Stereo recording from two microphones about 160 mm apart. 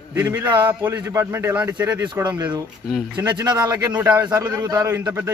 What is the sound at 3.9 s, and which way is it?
Speech, 10° right (ahead or behind).